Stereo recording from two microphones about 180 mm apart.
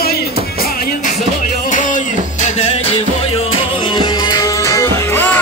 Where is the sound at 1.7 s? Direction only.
45° left (ahead or behind).